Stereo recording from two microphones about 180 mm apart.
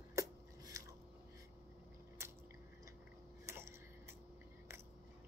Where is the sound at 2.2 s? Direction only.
15° right (ahead or behind).